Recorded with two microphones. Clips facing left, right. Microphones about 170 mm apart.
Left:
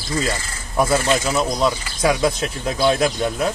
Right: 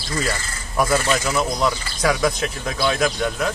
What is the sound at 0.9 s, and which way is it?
Speech, 20° left (ahead or behind).